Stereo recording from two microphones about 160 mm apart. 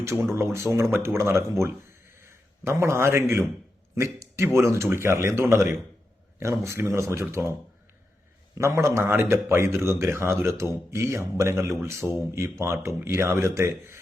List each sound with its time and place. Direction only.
0.0 s a man's voice: 15° right (ahead or behind)
8.5 s a man's voice: 15° right (ahead or behind)